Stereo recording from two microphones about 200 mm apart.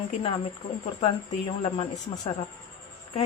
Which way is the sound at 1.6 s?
30° left (ahead or behind).